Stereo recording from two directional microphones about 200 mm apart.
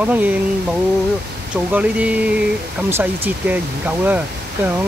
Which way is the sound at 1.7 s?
5° right (ahead or behind).